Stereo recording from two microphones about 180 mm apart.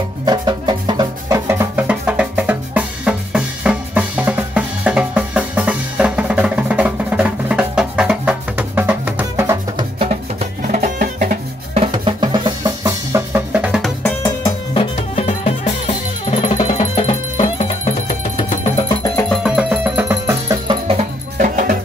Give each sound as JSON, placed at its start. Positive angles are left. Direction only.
{"t": 0.2, "sound": "music", "side_deg": -25}
{"t": 9.9, "sound": "music", "side_deg": -35}
{"t": 11.7, "sound": "music", "side_deg": -30}
{"t": 14.0, "sound": "music", "side_deg": 25}
{"t": 19.1, "sound": "music", "side_deg": 5}
{"t": 20.6, "sound": "music", "side_deg": -30}